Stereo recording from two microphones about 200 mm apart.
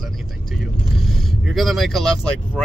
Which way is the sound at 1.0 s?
Centre (ahead or behind).